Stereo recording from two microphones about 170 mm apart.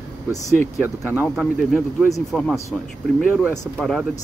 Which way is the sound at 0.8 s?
10° right (ahead or behind).